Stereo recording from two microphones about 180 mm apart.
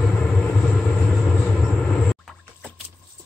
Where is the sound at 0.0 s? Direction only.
5° left (ahead or behind).